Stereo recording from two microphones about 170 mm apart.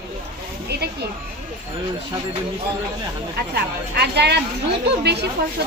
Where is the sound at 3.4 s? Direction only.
70° right (ahead or behind).